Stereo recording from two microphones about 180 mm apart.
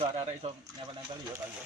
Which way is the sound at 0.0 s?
35° right (ahead or behind).